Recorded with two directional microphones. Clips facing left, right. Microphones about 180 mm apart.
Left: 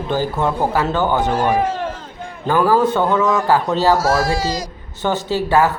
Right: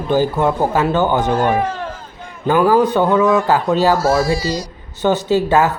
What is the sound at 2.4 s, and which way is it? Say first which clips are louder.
A man's voice: right 2 dB; 20° right (ahead or behind).